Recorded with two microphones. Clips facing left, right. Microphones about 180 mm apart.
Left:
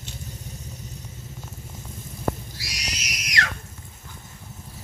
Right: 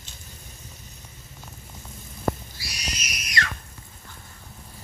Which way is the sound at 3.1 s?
90° left.